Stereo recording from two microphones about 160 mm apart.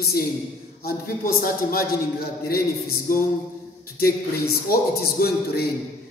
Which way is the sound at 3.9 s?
70° left (ahead or behind).